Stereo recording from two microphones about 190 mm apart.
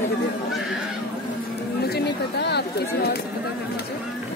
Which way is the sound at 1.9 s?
60° left (ahead or behind).